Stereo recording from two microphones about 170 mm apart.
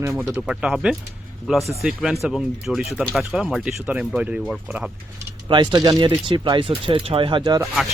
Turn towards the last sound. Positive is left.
turn(degrees=0)  # may be behind; listen again after turning